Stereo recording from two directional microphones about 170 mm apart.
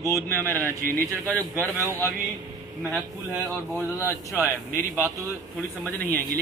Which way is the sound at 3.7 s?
15° left (ahead or behind).